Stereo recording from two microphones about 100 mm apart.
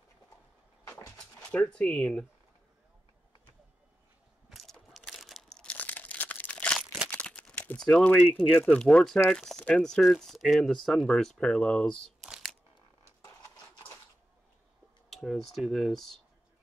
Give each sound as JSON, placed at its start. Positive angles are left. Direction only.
{"t": 1.5, "sound": "speech", "side_deg": 10}
{"t": 4.5, "sound": "crumpling", "side_deg": 0}
{"t": 6.8, "sound": "crumpling", "side_deg": -5}
{"t": 7.1, "sound": "typing", "side_deg": 15}
{"t": 8.4, "sound": "speech", "side_deg": 10}
{"t": 15.0, "sound": "speech", "side_deg": 0}